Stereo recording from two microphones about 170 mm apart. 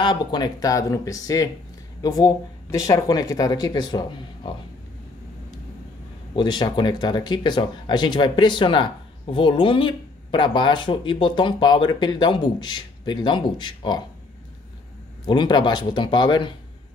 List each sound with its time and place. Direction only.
0.0 s speech: 25° left (ahead or behind)
6.3 s speech: 25° left (ahead or behind)
15.2 s speech: 25° left (ahead or behind)